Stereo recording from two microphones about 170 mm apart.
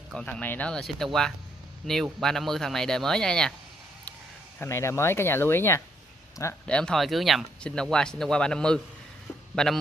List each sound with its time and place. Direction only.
0.1 s speech: 5° left (ahead or behind)
4.6 s speech: 15° left (ahead or behind)
6.7 s speech: 5° left (ahead or behind)